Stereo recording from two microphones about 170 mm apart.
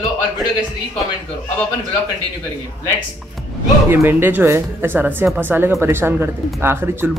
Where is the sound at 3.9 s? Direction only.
15° right (ahead or behind).